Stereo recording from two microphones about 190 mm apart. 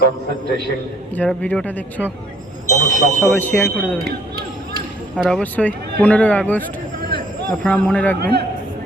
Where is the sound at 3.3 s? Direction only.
5° left (ahead or behind).